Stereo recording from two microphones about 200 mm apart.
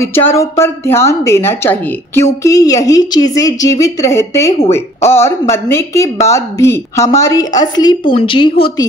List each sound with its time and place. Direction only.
0.0 s a woman's voice: 10° left (ahead or behind)